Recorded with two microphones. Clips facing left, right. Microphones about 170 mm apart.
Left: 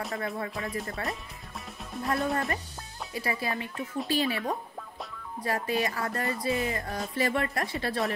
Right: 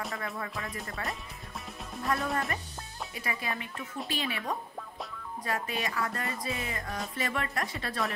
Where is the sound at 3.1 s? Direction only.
35° left (ahead or behind).